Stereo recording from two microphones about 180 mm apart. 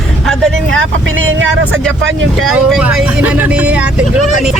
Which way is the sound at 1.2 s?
90° right.